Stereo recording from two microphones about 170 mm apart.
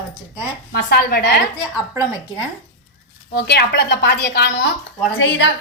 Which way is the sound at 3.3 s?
75° left (ahead or behind).